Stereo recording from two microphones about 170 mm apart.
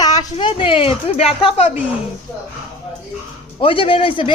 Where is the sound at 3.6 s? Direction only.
30° left (ahead or behind).